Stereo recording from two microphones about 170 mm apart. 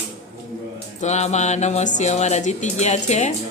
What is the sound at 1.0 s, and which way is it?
Speech, 40° left (ahead or behind).